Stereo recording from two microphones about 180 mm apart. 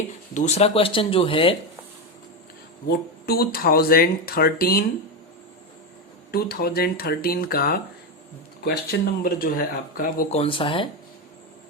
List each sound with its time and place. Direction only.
0.3 s speech: 40° left (ahead or behind)
2.8 s speech: 60° left (ahead or behind)
6.3 s speech: 60° left (ahead or behind)
10.2 s speech: 35° left (ahead or behind)